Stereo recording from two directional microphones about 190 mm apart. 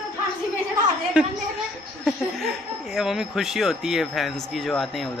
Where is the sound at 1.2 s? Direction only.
5° right (ahead or behind).